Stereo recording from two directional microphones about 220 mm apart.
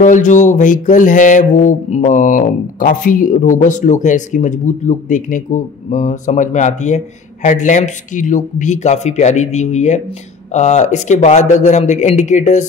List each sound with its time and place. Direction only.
0.0 s music: 35° left (ahead or behind)